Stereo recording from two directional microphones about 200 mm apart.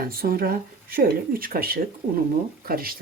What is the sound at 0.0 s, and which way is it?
Speech, 45° right (ahead or behind).